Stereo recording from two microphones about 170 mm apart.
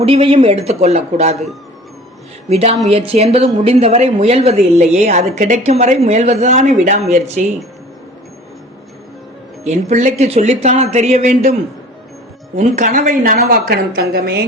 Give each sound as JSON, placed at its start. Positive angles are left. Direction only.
{"t": 0.0, "sound": "a woman's voice", "side_deg": -35}
{"t": 2.5, "sound": "a woman's voice", "side_deg": -40}
{"t": 9.6, "sound": "a woman's voice", "side_deg": -45}
{"t": 12.5, "sound": "a woman's voice", "side_deg": -45}